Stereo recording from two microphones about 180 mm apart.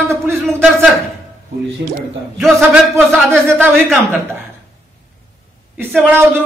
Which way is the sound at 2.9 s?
15° right (ahead or behind).